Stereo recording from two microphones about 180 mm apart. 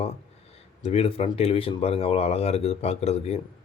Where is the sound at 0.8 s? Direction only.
30° left (ahead or behind).